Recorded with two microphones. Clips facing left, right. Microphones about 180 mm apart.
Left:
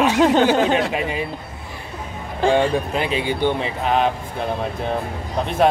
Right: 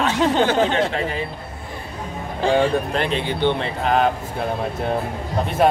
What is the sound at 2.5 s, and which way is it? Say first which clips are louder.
Speech: even; 5° left (ahead or behind).